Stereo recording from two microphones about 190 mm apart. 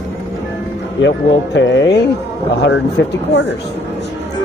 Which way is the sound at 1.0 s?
75° left (ahead or behind).